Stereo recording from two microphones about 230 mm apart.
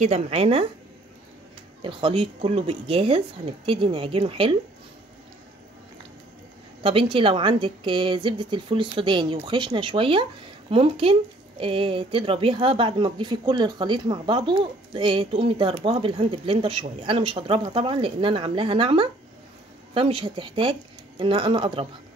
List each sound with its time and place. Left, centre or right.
0.0 s speech: right
1.8 s speech: right
6.8 s speech: right